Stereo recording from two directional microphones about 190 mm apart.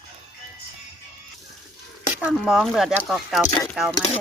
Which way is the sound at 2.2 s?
5° right (ahead or behind).